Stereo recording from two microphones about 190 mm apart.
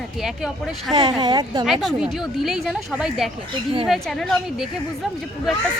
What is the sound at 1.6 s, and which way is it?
A woman's voice, centre (ahead or behind).